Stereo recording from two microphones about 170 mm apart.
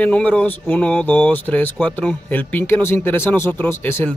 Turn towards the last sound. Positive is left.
turn(degrees=10)  # may be behind; listen again after turning